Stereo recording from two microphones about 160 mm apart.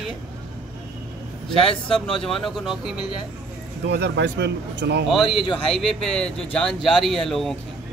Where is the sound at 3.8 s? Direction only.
90° right.